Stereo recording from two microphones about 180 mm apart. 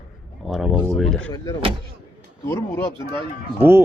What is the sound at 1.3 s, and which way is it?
Speech, 20° left (ahead or behind).